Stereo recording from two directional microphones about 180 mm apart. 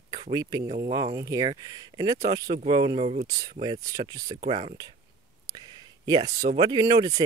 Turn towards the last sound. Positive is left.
turn(degrees=-25)  # may be behind; listen again after turning